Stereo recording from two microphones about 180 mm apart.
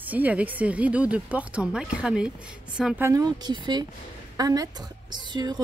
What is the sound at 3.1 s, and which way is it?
A woman's voice, 20° right (ahead or behind).